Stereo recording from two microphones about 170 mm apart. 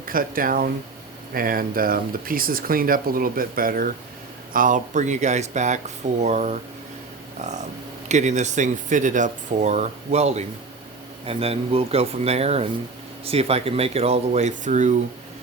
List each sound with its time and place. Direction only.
0.0 s speech: 55° right (ahead or behind)
8.0 s speech: 45° right (ahead or behind)